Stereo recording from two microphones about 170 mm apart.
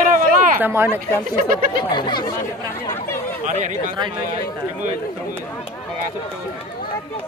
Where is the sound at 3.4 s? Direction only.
45° right (ahead or behind).